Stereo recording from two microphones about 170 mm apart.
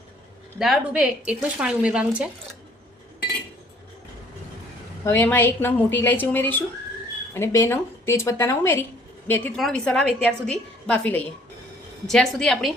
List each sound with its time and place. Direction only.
0.6 s speech: 5° right (ahead or behind)
5.0 s a woman's voice: 15° left (ahead or behind)